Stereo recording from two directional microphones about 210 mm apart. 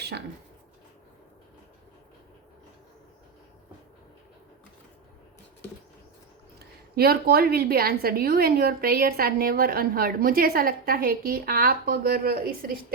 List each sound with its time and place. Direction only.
6.6 s a woman's voice: 45° right (ahead or behind)